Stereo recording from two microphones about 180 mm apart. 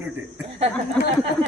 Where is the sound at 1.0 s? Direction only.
5° left (ahead or behind).